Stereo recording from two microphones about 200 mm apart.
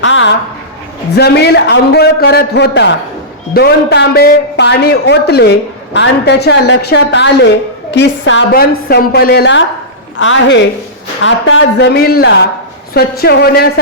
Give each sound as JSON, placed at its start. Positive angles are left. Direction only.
{"t": 0.0, "sound": "a sound", "side_deg": 70}
{"t": 1.1, "sound": "a man's voice", "side_deg": 55}
{"t": 11.9, "sound": "a man's voice", "side_deg": 50}